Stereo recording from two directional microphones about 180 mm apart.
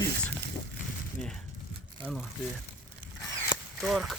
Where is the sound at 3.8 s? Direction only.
Centre (ahead or behind).